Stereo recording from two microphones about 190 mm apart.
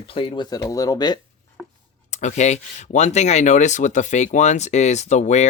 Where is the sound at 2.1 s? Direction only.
40° left (ahead or behind).